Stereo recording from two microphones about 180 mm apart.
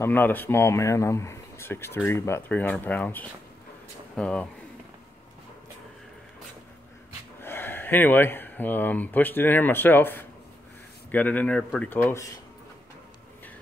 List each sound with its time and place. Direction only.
0.0 s speech: 10° left (ahead or behind)
7.4 s speech: 10° left (ahead or behind)